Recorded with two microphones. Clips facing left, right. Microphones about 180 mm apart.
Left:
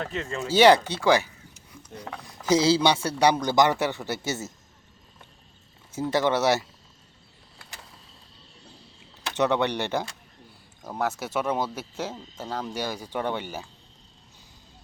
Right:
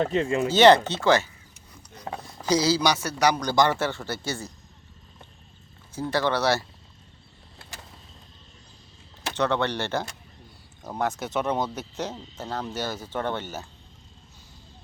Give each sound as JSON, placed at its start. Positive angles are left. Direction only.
{"t": 0.0, "sound": "speech", "side_deg": -35}
{"t": 0.5, "sound": "speech", "side_deg": 10}
{"t": 2.5, "sound": "a man's voice", "side_deg": 25}
{"t": 5.9, "sound": "a man's voice", "side_deg": 20}
{"t": 9.3, "sound": "speech", "side_deg": 20}